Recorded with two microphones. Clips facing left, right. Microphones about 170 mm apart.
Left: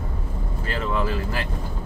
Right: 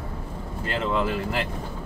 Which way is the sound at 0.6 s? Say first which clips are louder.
Right 1 dB; 25° right (ahead or behind).